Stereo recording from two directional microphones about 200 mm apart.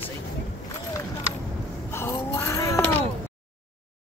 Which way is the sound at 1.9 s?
10° left (ahead or behind).